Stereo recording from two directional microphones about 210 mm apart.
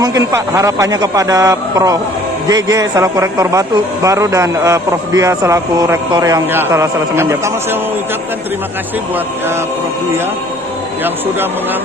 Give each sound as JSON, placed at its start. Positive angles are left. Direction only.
{"t": 0.0, "sound": "a man's voice", "side_deg": -15}